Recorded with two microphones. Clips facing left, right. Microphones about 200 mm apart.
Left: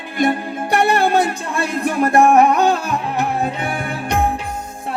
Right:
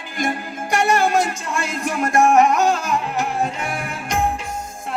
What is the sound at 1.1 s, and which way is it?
Speech, 35° left (ahead or behind).